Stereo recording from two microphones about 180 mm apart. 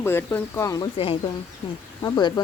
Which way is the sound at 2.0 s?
20° left (ahead or behind).